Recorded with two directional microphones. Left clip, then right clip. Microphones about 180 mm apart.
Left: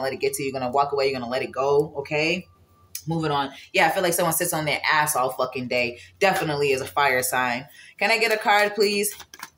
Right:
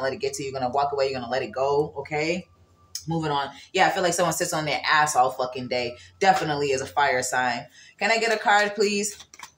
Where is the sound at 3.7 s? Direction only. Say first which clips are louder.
Left 1 dB; 10° left (ahead or behind).